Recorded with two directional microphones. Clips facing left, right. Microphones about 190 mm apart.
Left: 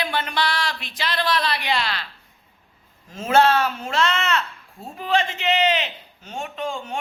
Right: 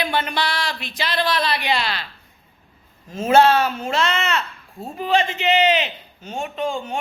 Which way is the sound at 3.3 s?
5° right (ahead or behind).